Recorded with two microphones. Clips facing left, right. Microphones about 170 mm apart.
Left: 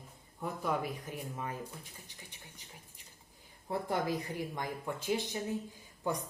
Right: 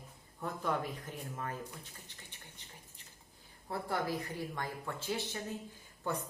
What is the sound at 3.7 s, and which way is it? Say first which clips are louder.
Speech: left 2 dB; 20° left (ahead or behind).